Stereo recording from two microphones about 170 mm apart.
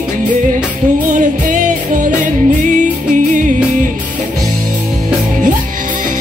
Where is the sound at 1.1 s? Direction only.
50° right (ahead or behind).